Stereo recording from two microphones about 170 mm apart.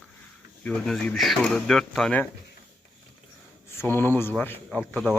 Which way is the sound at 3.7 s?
15° left (ahead or behind).